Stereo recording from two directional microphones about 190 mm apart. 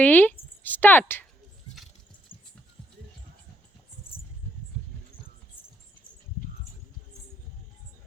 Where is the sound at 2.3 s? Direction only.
45° left (ahead or behind).